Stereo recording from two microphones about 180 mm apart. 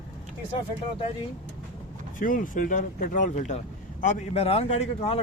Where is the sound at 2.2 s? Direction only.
50° left (ahead or behind).